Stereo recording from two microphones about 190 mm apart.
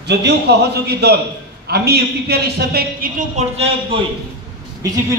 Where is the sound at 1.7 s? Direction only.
55° right (ahead or behind).